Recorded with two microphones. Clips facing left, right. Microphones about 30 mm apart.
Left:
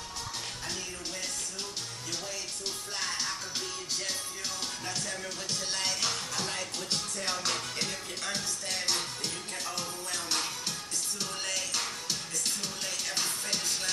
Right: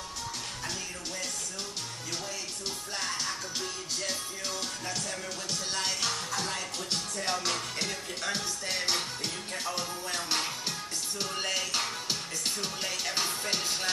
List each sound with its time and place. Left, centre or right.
3.0 s music: centre
5.5 s speech: centre
11.1 s music: centre